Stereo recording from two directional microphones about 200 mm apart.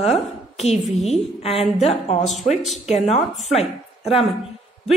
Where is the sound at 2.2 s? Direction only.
Centre (ahead or behind).